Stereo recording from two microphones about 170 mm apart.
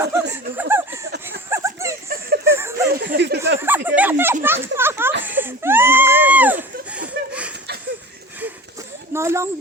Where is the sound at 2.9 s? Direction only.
70° right (ahead or behind).